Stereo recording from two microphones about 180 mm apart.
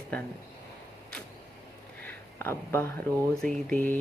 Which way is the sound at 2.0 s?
15° left (ahead or behind).